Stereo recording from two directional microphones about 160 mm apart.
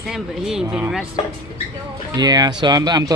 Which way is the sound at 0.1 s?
5° right (ahead or behind).